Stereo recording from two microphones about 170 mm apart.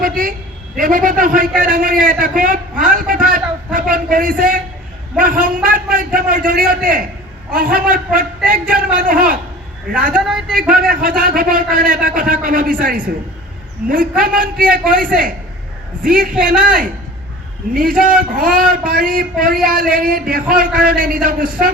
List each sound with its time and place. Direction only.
0.0 s a sound: 55° right (ahead or behind)
0.8 s a man's voice: 55° right (ahead or behind)
10.2 s speech: 5° right (ahead or behind)
10.5 s a man's voice: 55° right (ahead or behind)
13.8 s a man's voice: 55° right (ahead or behind)
17.7 s a man's voice: 55° right (ahead or behind)